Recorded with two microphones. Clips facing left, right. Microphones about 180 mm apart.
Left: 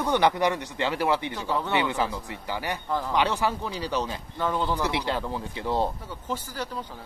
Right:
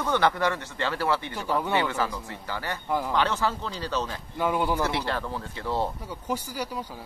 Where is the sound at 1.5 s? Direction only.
10° right (ahead or behind).